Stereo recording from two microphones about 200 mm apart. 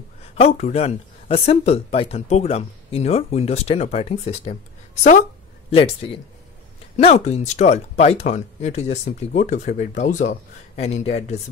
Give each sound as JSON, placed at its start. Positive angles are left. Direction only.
{"t": 0.3, "sound": "speech", "side_deg": 30}
{"t": 5.7, "sound": "a man's voice", "side_deg": 30}